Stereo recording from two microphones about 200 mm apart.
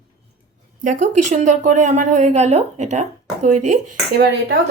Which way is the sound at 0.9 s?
35° right (ahead or behind).